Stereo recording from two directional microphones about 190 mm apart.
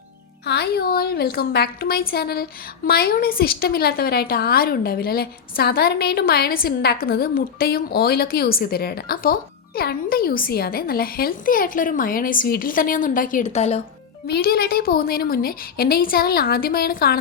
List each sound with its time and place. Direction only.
0.4 s a woman's voice: 60° left (ahead or behind); by 13.8 s 35° left (ahead or behind)
14.3 s a woman's voice: 55° left (ahead or behind)